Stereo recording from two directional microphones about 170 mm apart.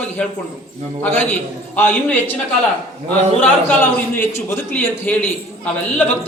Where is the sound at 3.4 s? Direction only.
10° left (ahead or behind).